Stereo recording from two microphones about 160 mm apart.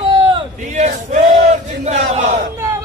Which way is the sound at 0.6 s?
50° right (ahead or behind).